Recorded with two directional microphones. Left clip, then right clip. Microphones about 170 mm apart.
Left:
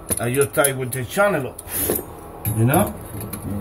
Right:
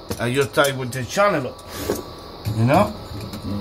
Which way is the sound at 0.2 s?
15° right (ahead or behind).